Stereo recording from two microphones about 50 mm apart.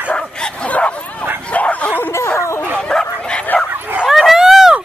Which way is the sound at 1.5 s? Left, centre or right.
Left.